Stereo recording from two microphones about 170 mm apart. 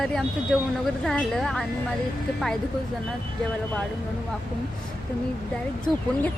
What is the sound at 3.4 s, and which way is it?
Speech, 5° left (ahead or behind).